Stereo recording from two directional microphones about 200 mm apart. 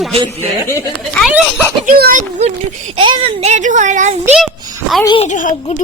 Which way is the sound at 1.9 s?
45° right (ahead or behind).